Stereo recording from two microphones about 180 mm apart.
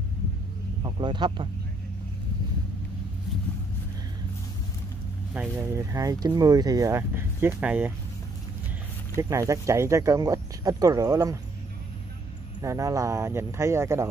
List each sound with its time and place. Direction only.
0.8 s speech: 25° right (ahead or behind)
5.3 s speech: 10° right (ahead or behind)
9.1 s speech: 15° right (ahead or behind)
12.6 s speech: 20° right (ahead or behind)